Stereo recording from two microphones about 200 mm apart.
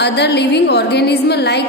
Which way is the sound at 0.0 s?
60° left (ahead or behind).